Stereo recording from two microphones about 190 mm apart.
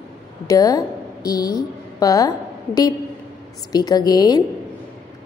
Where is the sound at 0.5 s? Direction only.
20° left (ahead or behind).